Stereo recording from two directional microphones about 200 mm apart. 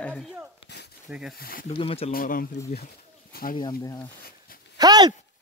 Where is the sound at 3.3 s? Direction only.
50° left (ahead or behind).